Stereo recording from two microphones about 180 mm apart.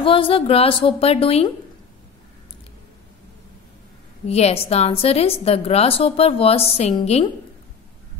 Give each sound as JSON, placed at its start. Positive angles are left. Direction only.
{"t": 0.0, "sound": "a woman's voice", "side_deg": 30}
{"t": 4.3, "sound": "a woman's voice", "side_deg": 35}